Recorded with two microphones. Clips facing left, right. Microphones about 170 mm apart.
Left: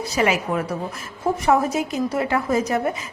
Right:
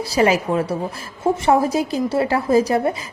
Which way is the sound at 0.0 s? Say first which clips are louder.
Right 4 dB; 35° right (ahead or behind).